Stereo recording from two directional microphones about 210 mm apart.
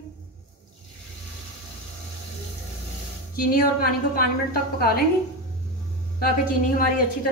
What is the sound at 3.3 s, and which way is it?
A woman's voice, 45° left (ahead or behind).